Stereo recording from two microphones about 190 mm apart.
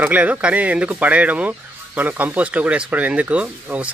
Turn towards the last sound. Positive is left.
turn(degrees=-5)  # may be behind; listen again after turning